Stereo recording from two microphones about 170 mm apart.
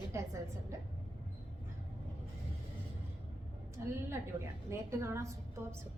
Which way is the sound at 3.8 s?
15° right (ahead or behind).